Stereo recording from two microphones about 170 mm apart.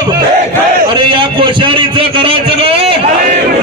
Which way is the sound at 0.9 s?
30° right (ahead or behind).